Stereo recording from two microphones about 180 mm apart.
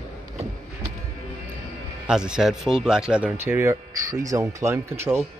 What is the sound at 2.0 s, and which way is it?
Speech, 5° right (ahead or behind).